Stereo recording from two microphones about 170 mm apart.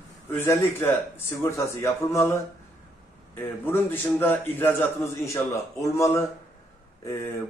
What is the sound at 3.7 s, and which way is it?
A man's voice, 10° left (ahead or behind).